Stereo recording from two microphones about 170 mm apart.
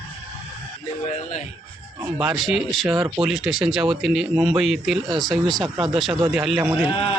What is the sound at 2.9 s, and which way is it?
Speech, 15° right (ahead or behind).